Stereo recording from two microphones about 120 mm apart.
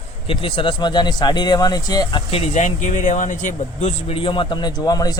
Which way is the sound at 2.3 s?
65° left (ahead or behind).